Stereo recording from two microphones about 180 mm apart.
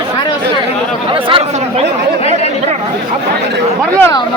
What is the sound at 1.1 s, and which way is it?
Chatter, 30° right (ahead or behind).